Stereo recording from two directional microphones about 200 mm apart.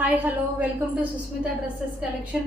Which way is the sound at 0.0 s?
10° right (ahead or behind).